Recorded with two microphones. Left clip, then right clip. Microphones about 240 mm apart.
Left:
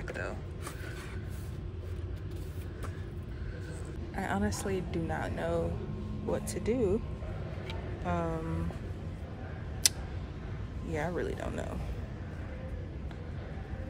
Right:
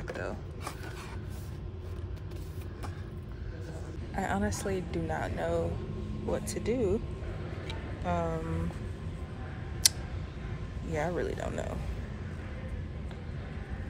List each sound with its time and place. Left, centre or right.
0.0 s a sound: centre
4.1 s a woman's voice: centre
7.6 s vehicle: centre
9.8 s tick: centre
10.9 s a woman's voice: centre